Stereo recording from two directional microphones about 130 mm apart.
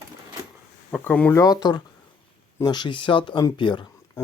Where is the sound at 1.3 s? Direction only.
30° left (ahead or behind).